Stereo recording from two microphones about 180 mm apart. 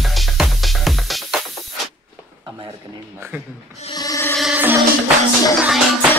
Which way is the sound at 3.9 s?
20° left (ahead or behind).